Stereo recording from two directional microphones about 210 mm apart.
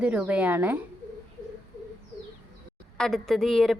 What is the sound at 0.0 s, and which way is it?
Speech, 5° right (ahead or behind).